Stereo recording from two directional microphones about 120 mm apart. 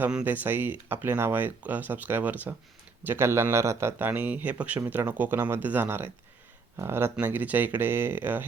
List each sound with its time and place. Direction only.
0.0 s speech: 10° right (ahead or behind)